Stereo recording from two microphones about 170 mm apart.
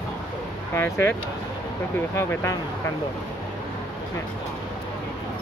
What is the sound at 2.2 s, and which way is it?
Speech, 15° left (ahead or behind).